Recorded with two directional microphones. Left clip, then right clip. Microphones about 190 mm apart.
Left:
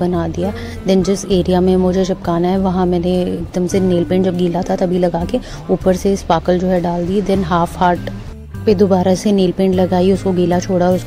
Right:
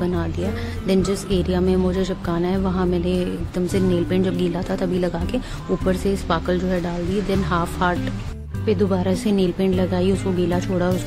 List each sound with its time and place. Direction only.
0.0 s a woman's voice: 20° left (ahead or behind)